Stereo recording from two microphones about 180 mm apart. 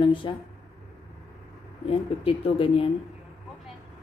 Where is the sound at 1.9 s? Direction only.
30° left (ahead or behind).